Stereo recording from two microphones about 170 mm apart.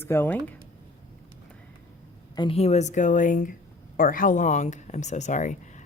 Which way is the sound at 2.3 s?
35° left (ahead or behind).